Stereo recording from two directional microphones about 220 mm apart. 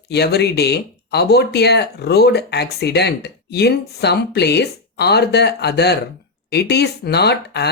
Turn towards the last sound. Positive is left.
turn(degrees=50)  # may be behind; listen again after turning